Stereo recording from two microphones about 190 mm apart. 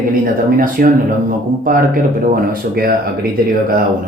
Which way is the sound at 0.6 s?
45° right (ahead or behind).